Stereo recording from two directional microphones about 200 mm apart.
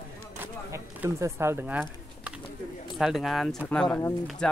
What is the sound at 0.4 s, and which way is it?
Bird, 10° right (ahead or behind).